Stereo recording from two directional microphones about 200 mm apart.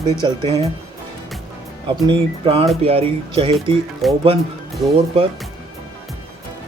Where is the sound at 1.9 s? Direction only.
25° right (ahead or behind).